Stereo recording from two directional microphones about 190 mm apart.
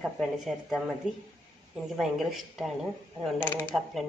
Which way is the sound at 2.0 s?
Centre (ahead or behind).